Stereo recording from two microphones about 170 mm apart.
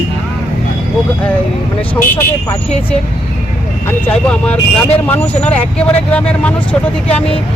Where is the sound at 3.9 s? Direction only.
10° left (ahead or behind).